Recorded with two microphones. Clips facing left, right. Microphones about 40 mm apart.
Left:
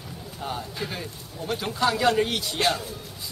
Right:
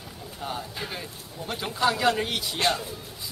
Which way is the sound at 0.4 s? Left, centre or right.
Centre.